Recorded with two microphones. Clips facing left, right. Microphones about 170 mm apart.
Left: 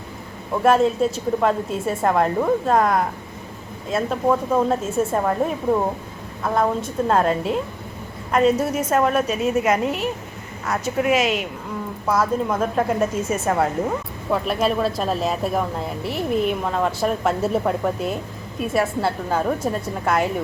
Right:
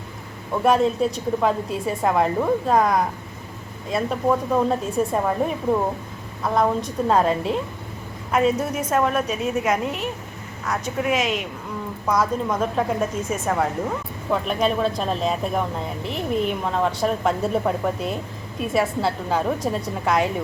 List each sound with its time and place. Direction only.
0.5 s a woman's voice: centre (ahead or behind)